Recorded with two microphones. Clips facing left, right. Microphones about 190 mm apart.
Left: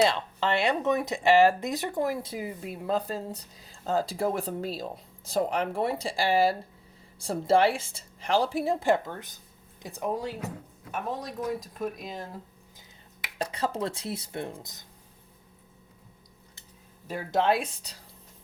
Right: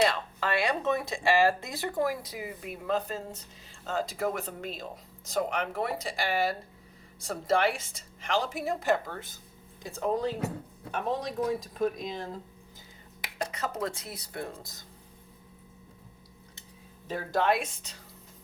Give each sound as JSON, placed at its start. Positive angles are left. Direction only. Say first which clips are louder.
{"t": 0.1, "sound": "speech", "louder": "left 3 dB", "side_deg": 25}
{"t": 9.1, "sound": "speech", "louder": "even", "side_deg": 15}
{"t": 13.4, "sound": "speech", "louder": "left 3 dB", "side_deg": 30}
{"t": 17.3, "sound": "speech", "louder": "left 2 dB", "side_deg": 30}